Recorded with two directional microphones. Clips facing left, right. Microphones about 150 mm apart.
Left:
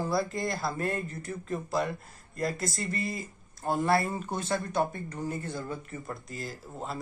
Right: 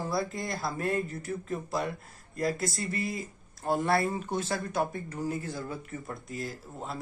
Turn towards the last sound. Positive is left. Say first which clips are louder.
# left 1 dB
turn(degrees=0)  # may be behind; listen again after turning